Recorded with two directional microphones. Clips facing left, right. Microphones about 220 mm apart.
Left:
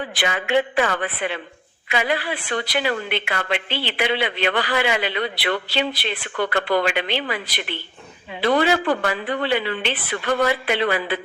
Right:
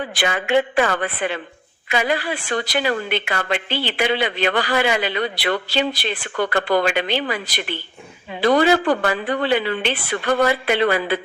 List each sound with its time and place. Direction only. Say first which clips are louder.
0.2 s speech: right 2 dB; 45° right (ahead or behind)